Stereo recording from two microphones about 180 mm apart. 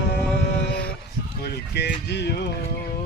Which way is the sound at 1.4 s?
70° left (ahead or behind).